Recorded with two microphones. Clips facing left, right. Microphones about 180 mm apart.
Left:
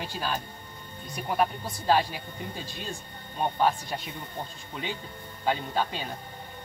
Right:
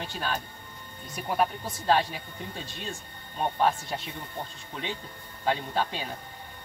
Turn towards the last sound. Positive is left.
turn(degrees=0)  # may be behind; listen again after turning